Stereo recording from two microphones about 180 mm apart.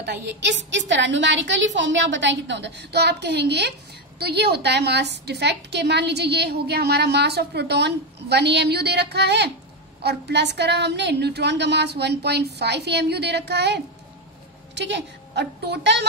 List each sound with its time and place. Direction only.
0.0 s a woman's voice: 70° right (ahead or behind)